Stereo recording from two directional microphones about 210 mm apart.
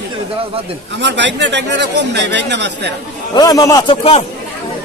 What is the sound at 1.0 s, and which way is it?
Speech, 55° right (ahead or behind).